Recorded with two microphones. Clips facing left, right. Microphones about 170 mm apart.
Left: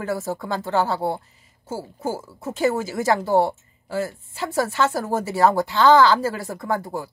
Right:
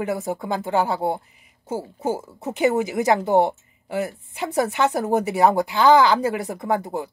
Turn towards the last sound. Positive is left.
turn(degrees=-20)  # may be behind; listen again after turning